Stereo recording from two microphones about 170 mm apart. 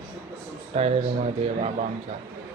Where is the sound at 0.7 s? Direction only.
40° right (ahead or behind).